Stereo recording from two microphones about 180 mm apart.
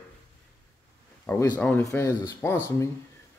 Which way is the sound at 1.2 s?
20° left (ahead or behind).